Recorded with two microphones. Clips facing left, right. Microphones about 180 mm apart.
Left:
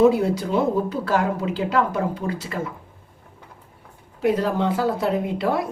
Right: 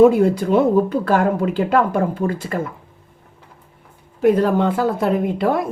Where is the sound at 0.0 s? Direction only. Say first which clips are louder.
Right 5 dB; 55° right (ahead or behind).